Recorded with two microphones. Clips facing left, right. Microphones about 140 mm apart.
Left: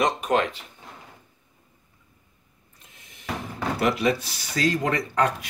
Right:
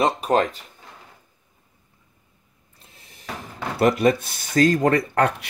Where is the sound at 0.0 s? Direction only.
35° right (ahead or behind).